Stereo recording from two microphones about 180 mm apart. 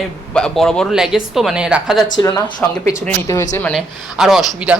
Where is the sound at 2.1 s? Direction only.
20° left (ahead or behind).